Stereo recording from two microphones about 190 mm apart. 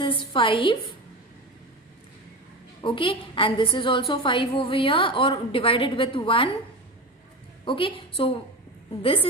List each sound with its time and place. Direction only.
0.0 s a woman's voice: 25° left (ahead or behind)
2.8 s a woman's voice: 25° left (ahead or behind)
7.6 s a woman's voice: 25° left (ahead or behind)